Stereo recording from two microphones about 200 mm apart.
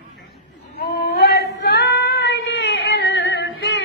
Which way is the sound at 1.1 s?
55° left (ahead or behind).